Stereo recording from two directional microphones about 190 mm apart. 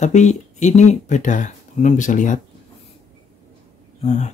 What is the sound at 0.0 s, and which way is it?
Speech, 40° left (ahead or behind).